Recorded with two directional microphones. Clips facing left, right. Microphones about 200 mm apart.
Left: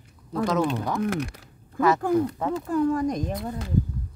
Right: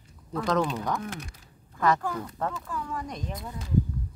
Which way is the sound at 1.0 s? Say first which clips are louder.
Left 11 dB; 65° left (ahead or behind).